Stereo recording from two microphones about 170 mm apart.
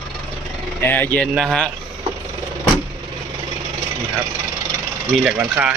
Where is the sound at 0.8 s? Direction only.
10° left (ahead or behind).